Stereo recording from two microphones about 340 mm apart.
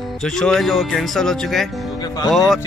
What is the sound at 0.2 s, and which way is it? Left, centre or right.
Speech, centre.